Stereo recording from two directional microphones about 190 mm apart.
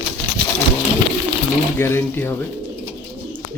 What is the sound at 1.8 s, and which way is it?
Speech, 10° left (ahead or behind).